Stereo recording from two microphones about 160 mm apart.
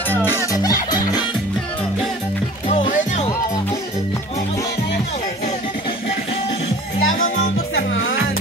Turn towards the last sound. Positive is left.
turn(degrees=55)  # may be behind; listen again after turning